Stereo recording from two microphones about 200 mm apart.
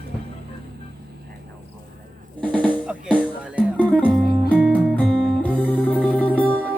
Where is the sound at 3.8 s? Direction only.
5° left (ahead or behind).